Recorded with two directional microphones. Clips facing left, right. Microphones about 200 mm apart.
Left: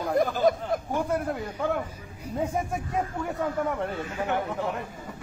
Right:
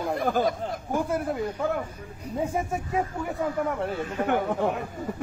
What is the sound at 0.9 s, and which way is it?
Speech, 5° right (ahead or behind).